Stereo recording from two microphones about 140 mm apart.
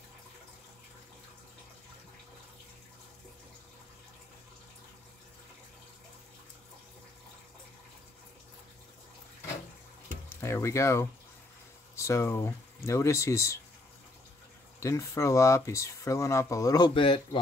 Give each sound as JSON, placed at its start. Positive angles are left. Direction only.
{"t": 10.3, "sound": "speech", "side_deg": 20}
{"t": 14.8, "sound": "speech", "side_deg": 20}